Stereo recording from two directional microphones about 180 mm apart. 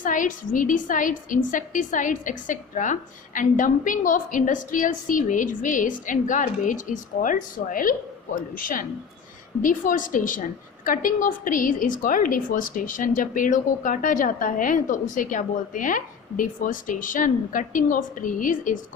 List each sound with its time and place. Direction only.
0.0 s a woman's voice: 45° left (ahead or behind)